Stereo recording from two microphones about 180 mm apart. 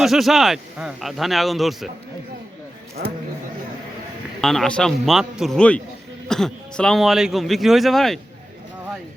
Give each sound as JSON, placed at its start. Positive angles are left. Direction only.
{"t": 0.0, "sound": "a man's voice", "side_deg": 0}
{"t": 3.0, "sound": "speech", "side_deg": -70}
{"t": 4.4, "sound": "a man's voice", "side_deg": 0}